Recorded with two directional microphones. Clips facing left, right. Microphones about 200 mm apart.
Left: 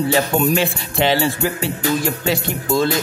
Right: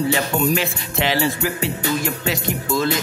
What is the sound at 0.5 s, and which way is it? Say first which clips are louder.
Speech: left 4 dB; 30° left (ahead or behind).